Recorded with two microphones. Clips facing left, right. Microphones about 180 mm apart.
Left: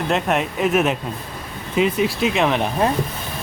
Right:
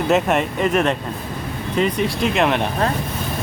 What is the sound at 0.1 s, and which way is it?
Speech, centre (ahead or behind).